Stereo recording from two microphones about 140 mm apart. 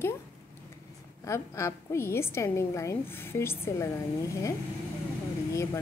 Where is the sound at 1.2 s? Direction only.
20° left (ahead or behind).